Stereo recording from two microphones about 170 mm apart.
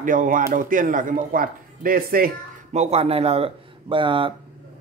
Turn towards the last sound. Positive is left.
turn(degrees=-30)  # may be behind; listen again after turning